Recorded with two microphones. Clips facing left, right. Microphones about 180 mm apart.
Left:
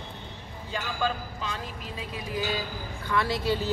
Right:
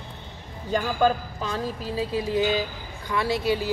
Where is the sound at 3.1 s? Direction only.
15° right (ahead or behind).